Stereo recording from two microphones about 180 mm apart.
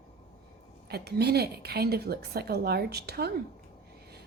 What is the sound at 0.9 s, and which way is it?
A woman's voice, 60° right (ahead or behind).